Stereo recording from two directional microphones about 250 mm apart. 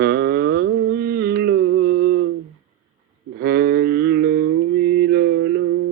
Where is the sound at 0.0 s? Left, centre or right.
Right.